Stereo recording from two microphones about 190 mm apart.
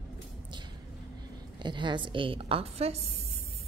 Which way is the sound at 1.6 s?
25° right (ahead or behind).